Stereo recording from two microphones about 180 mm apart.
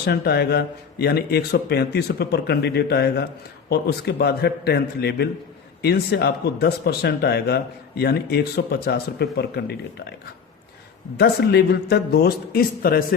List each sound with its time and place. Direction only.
0.0 s speech: 65° left (ahead or behind)
11.2 s speech: 65° left (ahead or behind)